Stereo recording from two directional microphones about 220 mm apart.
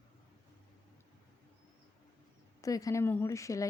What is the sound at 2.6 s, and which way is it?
Speech, 15° left (ahead or behind).